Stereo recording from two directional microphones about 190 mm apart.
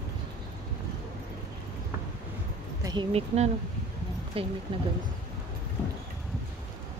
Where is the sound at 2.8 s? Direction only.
25° right (ahead or behind).